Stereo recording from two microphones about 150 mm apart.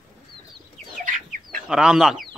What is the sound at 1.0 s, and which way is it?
Chicken, 65° right (ahead or behind).